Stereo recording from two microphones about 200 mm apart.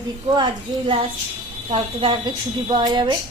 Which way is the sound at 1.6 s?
25° right (ahead or behind).